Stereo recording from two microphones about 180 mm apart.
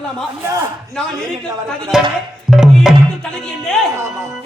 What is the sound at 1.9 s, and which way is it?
Speech, centre (ahead or behind).